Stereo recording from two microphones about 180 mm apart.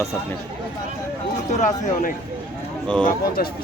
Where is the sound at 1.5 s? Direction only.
40° left (ahead or behind).